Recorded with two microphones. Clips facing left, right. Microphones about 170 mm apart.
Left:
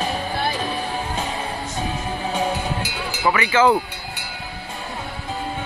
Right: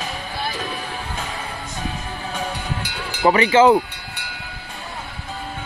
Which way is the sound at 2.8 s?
10° left (ahead or behind).